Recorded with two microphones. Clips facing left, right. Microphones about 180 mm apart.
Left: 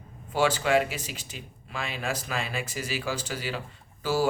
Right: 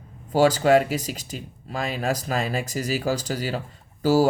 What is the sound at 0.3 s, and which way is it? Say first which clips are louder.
Speech: right 6 dB; 40° right (ahead or behind).